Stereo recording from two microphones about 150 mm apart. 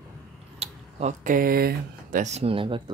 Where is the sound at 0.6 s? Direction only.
50° right (ahead or behind).